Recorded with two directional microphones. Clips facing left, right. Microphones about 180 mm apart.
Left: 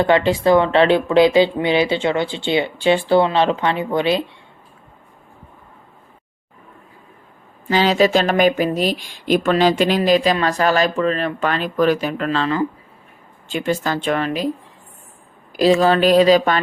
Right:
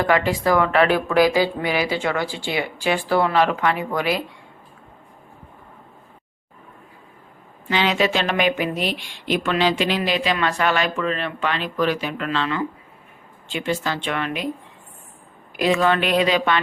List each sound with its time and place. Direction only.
0.0 s speech: 25° left (ahead or behind)
7.7 s speech: 35° left (ahead or behind)
15.5 s speech: 35° left (ahead or behind)